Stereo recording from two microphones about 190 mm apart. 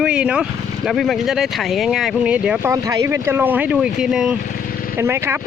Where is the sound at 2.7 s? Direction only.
15° right (ahead or behind).